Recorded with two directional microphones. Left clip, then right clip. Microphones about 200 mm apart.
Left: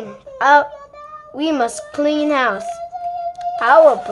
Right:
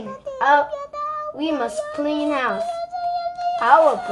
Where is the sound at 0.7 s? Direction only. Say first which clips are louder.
Right 8 dB; 50° right (ahead or behind).